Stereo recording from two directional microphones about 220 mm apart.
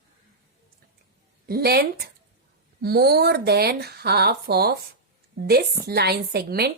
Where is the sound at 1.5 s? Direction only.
45° right (ahead or behind).